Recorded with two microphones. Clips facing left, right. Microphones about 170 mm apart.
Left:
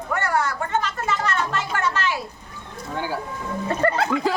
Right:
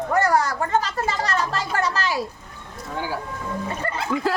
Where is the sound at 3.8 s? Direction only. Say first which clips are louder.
Left 7 dB; 60° left (ahead or behind).